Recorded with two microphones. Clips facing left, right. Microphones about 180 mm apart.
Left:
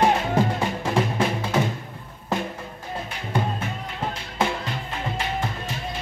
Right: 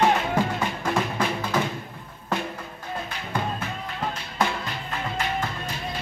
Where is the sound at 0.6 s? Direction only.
25° left (ahead or behind).